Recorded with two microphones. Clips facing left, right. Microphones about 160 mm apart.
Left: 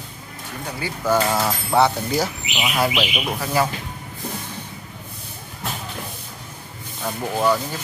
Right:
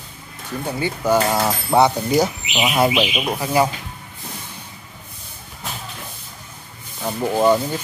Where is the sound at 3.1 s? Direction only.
20° right (ahead or behind).